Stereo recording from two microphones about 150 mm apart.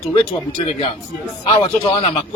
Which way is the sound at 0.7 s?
45° left (ahead or behind).